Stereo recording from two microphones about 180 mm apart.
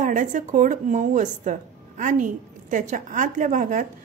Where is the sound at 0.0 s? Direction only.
45° right (ahead or behind).